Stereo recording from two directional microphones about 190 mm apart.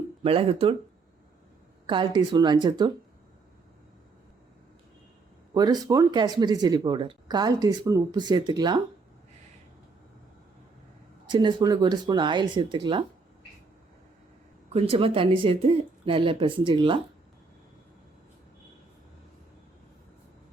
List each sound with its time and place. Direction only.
0.2 s speech: 30° right (ahead or behind)
1.9 s speech: 25° right (ahead or behind)
5.5 s speech: 20° right (ahead or behind)
11.3 s speech: 20° right (ahead or behind)
14.7 s speech: 30° right (ahead or behind)